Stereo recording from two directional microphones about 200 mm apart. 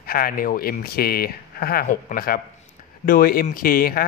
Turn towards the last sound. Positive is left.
turn(degrees=45)  # may be behind; listen again after turning